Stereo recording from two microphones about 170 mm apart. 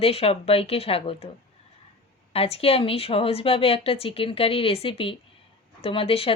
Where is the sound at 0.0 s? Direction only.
35° left (ahead or behind).